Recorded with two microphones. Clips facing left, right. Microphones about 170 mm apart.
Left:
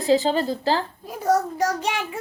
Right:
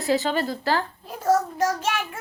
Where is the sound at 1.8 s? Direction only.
15° left (ahead or behind).